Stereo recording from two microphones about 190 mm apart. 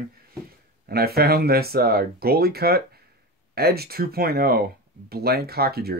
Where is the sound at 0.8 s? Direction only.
55° right (ahead or behind).